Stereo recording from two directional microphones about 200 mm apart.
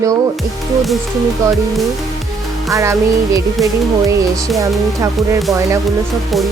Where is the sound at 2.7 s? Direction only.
15° right (ahead or behind).